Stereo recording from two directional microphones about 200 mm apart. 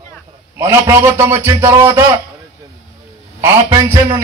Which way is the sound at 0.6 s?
15° right (ahead or behind).